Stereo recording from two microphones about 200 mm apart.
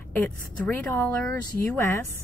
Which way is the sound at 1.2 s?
15° left (ahead or behind).